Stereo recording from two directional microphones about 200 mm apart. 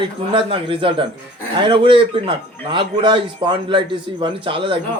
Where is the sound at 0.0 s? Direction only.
25° right (ahead or behind).